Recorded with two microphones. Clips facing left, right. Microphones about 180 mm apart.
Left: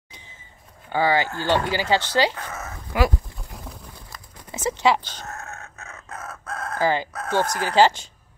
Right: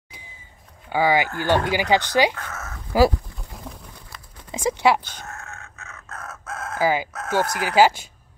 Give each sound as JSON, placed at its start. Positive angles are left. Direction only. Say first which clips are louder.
{"t": 0.8, "sound": "speech", "louder": "right 1 dB", "side_deg": -10}
{"t": 2.3, "sound": "speech", "louder": "left 1 dB", "side_deg": 15}
{"t": 2.9, "sound": "speech", "louder": "right 5 dB", "side_deg": -35}
{"t": 3.3, "sound": "pigeon", "louder": "right 1 dB", "side_deg": 0}
{"t": 4.5, "sound": "speech", "louder": "right 1 dB", "side_deg": -15}
{"t": 5.2, "sound": "chicken", "louder": "left 2 dB", "side_deg": 35}
{"t": 6.2, "sound": "chicken", "louder": "left 1 dB", "side_deg": -5}
{"t": 7.5, "sound": "speech", "louder": "right 1 dB", "side_deg": -10}